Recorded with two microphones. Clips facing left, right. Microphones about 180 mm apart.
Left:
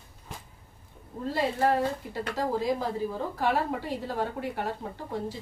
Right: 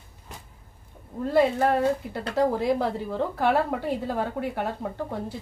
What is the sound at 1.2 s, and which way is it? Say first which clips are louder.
Speech: right 5 dB; 60° right (ahead or behind).